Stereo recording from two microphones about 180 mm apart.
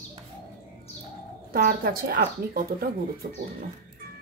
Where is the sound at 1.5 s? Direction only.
55° right (ahead or behind).